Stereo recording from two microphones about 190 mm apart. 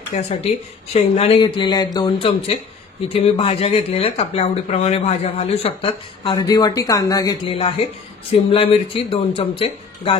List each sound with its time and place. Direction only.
0.1 s speech: 35° left (ahead or behind); by 7.5 s 20° left (ahead or behind)
7.5 s speech: 30° left (ahead or behind)